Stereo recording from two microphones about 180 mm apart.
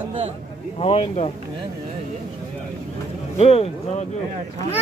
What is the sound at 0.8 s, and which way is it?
Speech, 35° left (ahead or behind).